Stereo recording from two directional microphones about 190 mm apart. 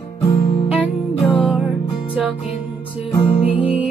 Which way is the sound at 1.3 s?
Centre (ahead or behind).